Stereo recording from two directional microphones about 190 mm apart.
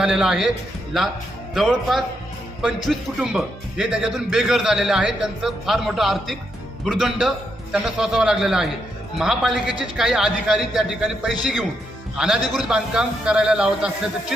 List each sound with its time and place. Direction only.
0.0 s speech: 5° right (ahead or behind)
1.5 s speech: centre (ahead or behind)